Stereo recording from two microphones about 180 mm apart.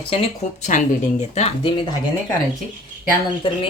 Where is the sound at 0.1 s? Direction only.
30° left (ahead or behind).